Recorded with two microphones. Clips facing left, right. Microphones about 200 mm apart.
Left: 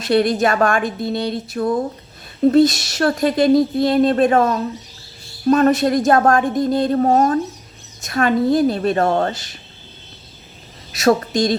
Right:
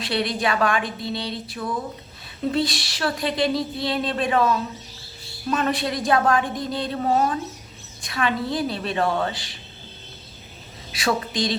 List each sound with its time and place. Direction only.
0.0 s speech: 45° left (ahead or behind)
10.9 s speech: 45° left (ahead or behind)